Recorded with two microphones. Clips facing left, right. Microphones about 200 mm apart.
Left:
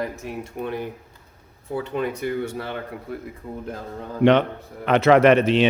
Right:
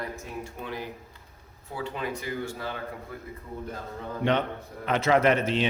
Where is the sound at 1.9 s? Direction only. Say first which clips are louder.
Left 8 dB; 60° left (ahead or behind).